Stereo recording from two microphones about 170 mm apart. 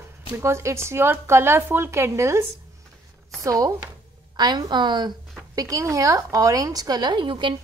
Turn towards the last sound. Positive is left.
turn(degrees=-30)  # may be behind; listen again after turning